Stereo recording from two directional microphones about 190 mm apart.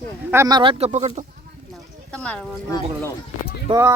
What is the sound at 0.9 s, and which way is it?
Speech, 35° right (ahead or behind).